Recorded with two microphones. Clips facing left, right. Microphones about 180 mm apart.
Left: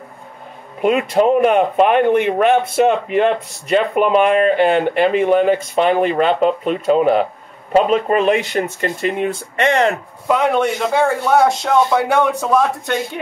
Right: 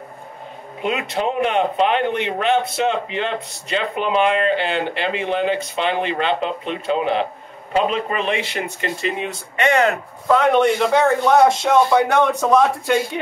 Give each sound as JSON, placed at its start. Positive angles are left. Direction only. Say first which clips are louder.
{"t": 0.8, "sound": "speech", "louder": "left 8 dB", "side_deg": 45}
{"t": 10.2, "sound": "a man's voice", "louder": "right 1 dB", "side_deg": 10}